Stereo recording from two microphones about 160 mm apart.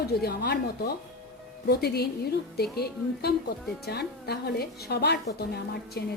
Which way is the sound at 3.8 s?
90° left.